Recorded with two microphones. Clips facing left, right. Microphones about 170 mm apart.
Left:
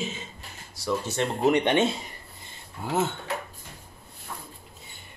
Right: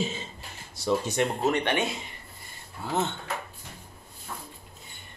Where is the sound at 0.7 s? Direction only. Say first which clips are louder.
Right 2 dB; 25° right (ahead or behind).